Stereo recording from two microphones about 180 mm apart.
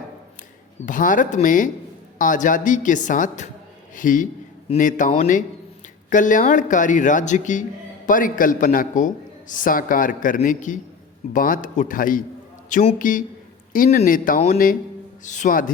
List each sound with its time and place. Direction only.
0.9 s a man's voice: 45° left (ahead or behind)